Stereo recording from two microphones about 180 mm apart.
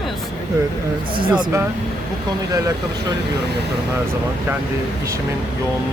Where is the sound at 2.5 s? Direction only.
20° right (ahead or behind).